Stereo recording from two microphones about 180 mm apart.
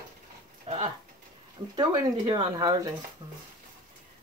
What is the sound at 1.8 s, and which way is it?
Speech, 25° right (ahead or behind).